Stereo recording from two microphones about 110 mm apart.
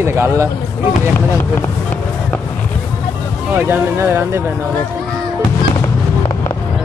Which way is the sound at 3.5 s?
20° right (ahead or behind).